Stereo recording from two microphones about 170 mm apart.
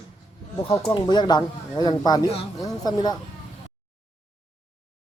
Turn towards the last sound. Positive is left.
turn(degrees=25)  # may be behind; listen again after turning